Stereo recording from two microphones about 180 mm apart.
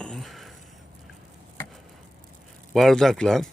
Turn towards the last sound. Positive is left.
turn(degrees=0)  # may be behind; listen again after turning